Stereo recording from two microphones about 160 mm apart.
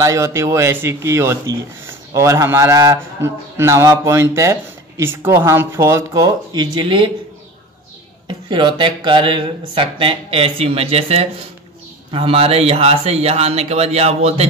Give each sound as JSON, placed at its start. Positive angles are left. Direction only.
{"t": 0.0, "sound": "speech", "side_deg": -20}
{"t": 8.3, "sound": "speech", "side_deg": -30}